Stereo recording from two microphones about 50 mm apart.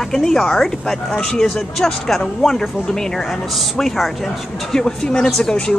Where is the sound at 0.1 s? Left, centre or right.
Centre.